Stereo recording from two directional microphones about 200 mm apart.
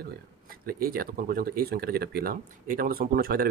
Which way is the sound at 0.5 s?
45° right (ahead or behind).